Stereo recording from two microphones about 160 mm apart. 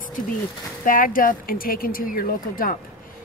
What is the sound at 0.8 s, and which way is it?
Speech, 60° left (ahead or behind).